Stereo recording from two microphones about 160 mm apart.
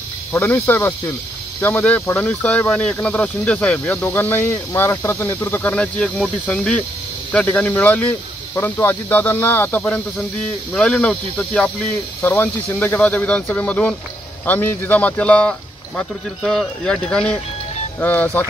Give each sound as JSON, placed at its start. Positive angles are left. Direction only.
{"t": 0.3, "sound": "speech", "side_deg": 15}